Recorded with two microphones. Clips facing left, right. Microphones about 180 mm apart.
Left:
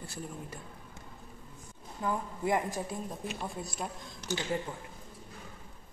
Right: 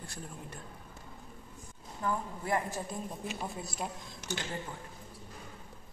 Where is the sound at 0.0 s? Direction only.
5° left (ahead or behind).